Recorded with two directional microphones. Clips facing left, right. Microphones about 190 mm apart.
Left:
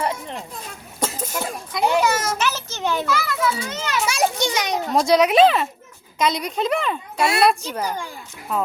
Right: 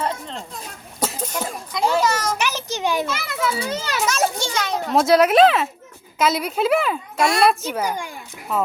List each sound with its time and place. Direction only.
0.0 s a sound: 10° left (ahead or behind)
2.4 s a sound: 15° right (ahead or behind)
3.2 s a child's voice: 30° right (ahead or behind)
4.0 s a child's voice: 15° left (ahead or behind)
4.9 s a woman's voice: centre (ahead or behind)
8.5 s a woman's voice: centre (ahead or behind)